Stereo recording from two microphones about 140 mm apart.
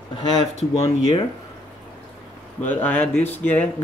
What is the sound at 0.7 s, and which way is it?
Speech, 20° left (ahead or behind).